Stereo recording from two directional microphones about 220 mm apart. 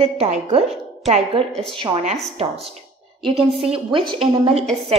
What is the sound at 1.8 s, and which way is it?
Speech, 20° right (ahead or behind).